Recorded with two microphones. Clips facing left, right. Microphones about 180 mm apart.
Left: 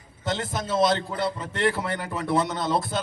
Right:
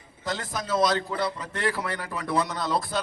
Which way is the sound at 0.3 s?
25° left (ahead or behind).